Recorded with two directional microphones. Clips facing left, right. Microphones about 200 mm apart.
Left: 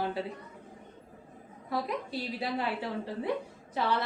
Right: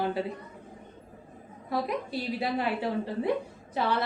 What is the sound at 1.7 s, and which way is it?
Speech, 15° right (ahead or behind).